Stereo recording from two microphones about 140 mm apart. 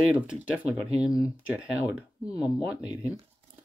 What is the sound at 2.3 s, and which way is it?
Speech, 10° right (ahead or behind).